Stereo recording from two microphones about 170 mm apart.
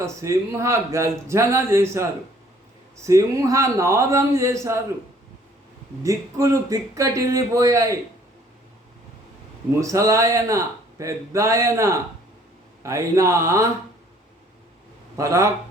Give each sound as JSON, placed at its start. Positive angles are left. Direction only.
{"t": 0.0, "sound": "speech", "side_deg": -15}
{"t": 3.1, "sound": "speech", "side_deg": -20}
{"t": 6.0, "sound": "speech", "side_deg": -20}
{"t": 9.8, "sound": "speech", "side_deg": -20}
{"t": 15.1, "sound": "speech", "side_deg": -20}